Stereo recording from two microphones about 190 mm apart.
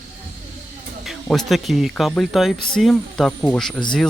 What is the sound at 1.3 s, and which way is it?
Speech, centre (ahead or behind).